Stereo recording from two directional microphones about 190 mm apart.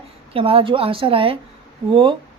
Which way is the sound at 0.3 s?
30° right (ahead or behind).